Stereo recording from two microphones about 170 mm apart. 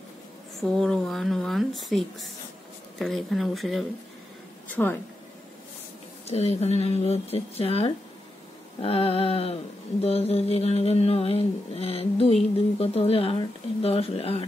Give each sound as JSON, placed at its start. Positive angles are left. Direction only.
{"t": 0.6, "sound": "speech", "side_deg": 0}
{"t": 4.6, "sound": "speech", "side_deg": 10}
{"t": 6.2, "sound": "a sound", "side_deg": 40}